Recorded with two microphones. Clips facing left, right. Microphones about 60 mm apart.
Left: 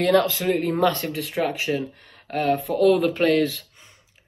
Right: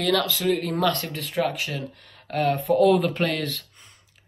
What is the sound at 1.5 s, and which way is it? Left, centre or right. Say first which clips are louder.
Speech: left 5 dB; left.